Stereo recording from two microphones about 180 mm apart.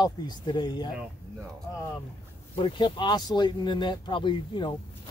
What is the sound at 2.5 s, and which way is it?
A man's voice, 30° left (ahead or behind).